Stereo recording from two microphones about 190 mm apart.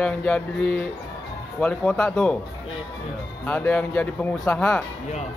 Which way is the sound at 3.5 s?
10° left (ahead or behind).